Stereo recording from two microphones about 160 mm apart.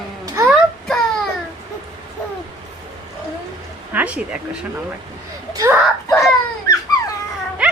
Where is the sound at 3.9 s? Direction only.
10° right (ahead or behind).